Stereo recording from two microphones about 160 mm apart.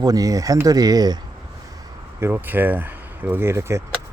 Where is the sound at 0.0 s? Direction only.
20° right (ahead or behind).